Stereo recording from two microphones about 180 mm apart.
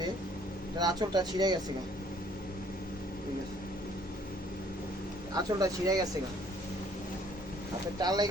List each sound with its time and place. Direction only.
0.8 s speech: 20° right (ahead or behind)
5.3 s speech: 20° right (ahead or behind)
7.9 s speech: 20° right (ahead or behind)